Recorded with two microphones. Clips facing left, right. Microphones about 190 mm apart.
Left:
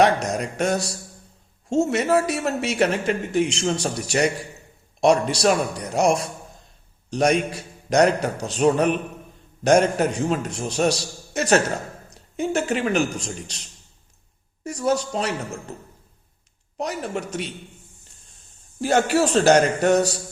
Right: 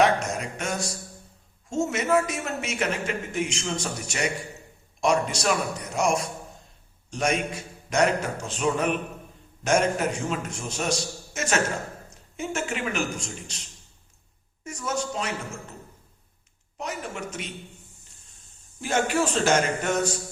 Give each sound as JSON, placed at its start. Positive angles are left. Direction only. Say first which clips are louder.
{"t": 0.0, "sound": "a sound", "louder": "left 3 dB", "side_deg": 35}
{"t": 1.7, "sound": "a man's voice", "louder": "left 4 dB", "side_deg": 35}
{"t": 16.7, "sound": "a man's voice", "louder": "left 6 dB", "side_deg": 35}
{"t": 18.8, "sound": "a man's voice", "louder": "left 5 dB", "side_deg": 35}